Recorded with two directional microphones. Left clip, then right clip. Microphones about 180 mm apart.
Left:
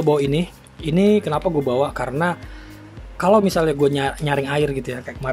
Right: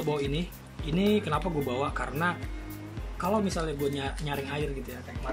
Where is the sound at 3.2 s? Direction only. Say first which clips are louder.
Left 13 dB; 50° left (ahead or behind).